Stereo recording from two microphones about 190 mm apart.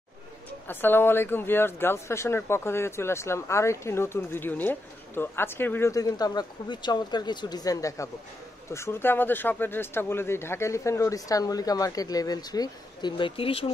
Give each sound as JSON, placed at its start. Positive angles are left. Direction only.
{"t": 0.7, "sound": "speech", "side_deg": 10}